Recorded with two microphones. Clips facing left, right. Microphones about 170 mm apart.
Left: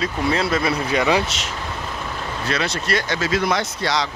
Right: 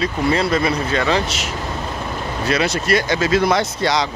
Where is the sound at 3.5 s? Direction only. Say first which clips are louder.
Right 4 dB; 25° right (ahead or behind).